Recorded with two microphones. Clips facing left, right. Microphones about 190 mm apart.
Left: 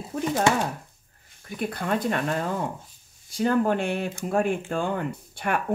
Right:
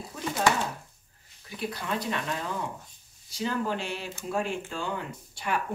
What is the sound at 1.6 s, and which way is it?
Speech, 55° left (ahead or behind).